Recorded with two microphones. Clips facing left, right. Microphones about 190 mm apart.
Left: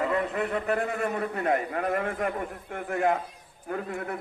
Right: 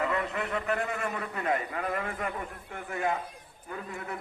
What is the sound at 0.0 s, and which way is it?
A man's voice, 35° left (ahead or behind).